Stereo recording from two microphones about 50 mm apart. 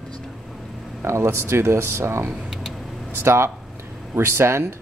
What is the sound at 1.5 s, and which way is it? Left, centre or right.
Speech, right.